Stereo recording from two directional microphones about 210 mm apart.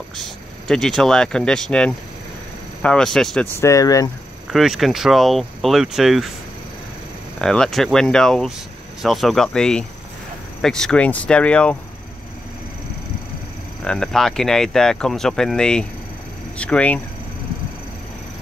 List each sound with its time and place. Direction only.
0.2 s speech: centre (ahead or behind)
3.5 s speech: 15° left (ahead or behind)
4.5 s speech: centre (ahead or behind)
7.3 s speech: centre (ahead or behind)
13.8 s speech: centre (ahead or behind)